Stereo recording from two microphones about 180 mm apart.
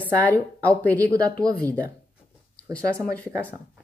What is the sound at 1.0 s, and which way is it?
Speech, 20° right (ahead or behind).